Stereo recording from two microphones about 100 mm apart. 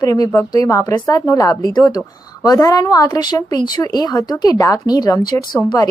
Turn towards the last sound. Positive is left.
turn(degrees=35)  # may be behind; listen again after turning